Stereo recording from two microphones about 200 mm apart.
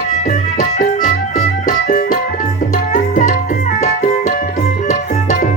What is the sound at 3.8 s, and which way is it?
Music, 35° left (ahead or behind).